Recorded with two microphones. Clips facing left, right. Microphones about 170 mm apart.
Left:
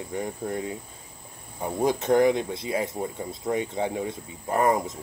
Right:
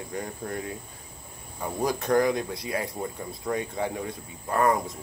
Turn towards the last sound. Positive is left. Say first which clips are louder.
# left 1 dB
turn(degrees=20)  # may be behind; listen again after turning